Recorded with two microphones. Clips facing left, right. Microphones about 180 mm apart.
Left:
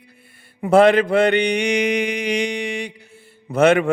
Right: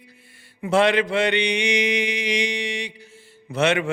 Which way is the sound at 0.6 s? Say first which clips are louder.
Left 6 dB; 50° left (ahead or behind).